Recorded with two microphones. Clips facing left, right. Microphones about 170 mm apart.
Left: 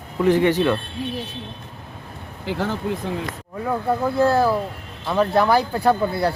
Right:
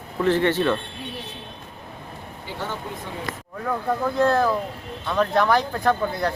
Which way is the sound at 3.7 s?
10° left (ahead or behind).